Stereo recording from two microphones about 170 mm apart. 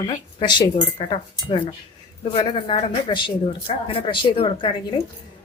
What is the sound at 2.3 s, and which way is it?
Speech, 30° left (ahead or behind).